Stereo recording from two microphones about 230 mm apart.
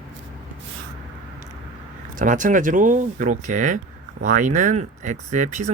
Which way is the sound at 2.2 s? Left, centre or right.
Right.